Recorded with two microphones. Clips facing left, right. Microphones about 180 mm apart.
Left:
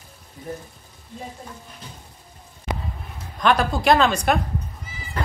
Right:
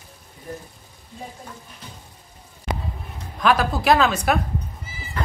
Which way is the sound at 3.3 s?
5° right (ahead or behind).